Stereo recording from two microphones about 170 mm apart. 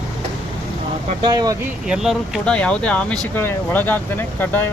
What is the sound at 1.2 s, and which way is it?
Speech, 25° right (ahead or behind).